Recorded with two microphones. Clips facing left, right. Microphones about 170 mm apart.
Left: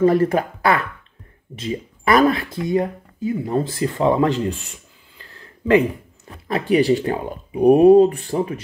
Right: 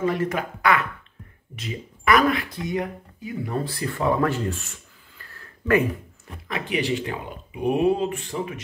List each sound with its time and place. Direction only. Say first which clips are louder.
0.0 s speech: left 8 dB; 40° left (ahead or behind); by 5.8 s 20° left (ahead or behind)
6.4 s speech: left 9 dB; 35° left (ahead or behind)